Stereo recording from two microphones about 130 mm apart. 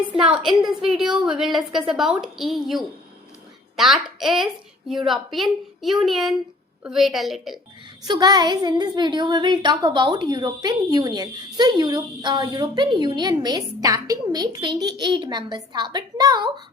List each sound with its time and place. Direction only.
0.1 s a woman's voice: 5° right (ahead or behind)
8.0 s a woman's voice: 30° right (ahead or behind)